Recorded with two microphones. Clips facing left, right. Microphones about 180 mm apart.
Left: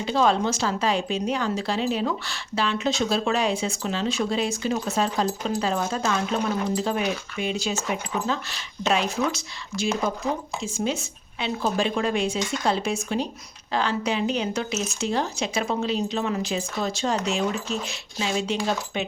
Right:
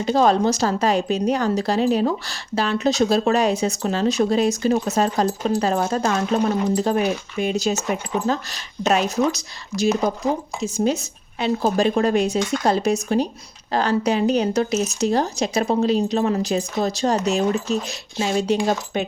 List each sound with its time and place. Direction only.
0.0 s a woman's voice: 45° right (ahead or behind)